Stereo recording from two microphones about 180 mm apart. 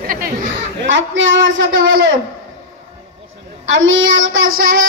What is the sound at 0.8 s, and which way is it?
Speech, 90° right.